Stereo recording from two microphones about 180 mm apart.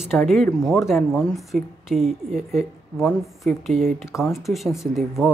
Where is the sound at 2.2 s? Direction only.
40° right (ahead or behind).